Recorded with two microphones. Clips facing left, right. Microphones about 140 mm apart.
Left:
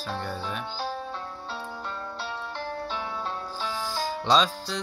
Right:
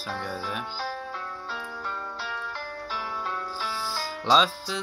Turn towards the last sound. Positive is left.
turn(degrees=0)  # may be behind; listen again after turning